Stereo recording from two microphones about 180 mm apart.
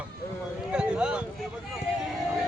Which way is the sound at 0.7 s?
5° right (ahead or behind).